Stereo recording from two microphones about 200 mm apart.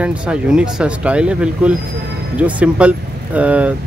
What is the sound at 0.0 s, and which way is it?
Speech, 5° right (ahead or behind).